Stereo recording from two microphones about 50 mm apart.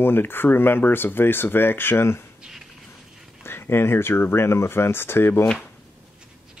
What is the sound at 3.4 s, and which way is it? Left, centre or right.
Speech, left.